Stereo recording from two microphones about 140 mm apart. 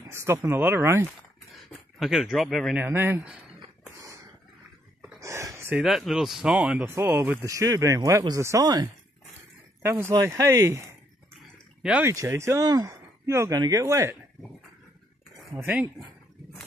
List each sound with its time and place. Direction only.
0.1 s speech: 20° right (ahead or behind)
1.5 s speech: centre (ahead or behind)
2.8 s speech: 15° right (ahead or behind)
5.2 s a sound: 20° right (ahead or behind)
5.8 s speech: 5° right (ahead or behind)
6.9 s speech: 20° right (ahead or behind)
12.0 s speech: 20° right (ahead or behind)
15.5 s speech: 10° right (ahead or behind)